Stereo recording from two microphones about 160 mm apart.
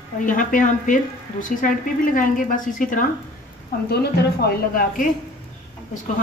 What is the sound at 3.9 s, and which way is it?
Speech, 85° left.